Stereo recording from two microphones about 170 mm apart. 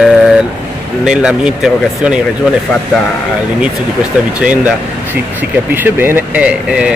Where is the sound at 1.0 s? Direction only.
5° right (ahead or behind).